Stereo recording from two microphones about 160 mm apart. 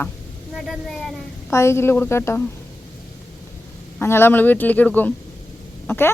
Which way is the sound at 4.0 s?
15° left (ahead or behind).